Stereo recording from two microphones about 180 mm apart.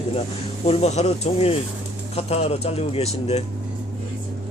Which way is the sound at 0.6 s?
35° left (ahead or behind).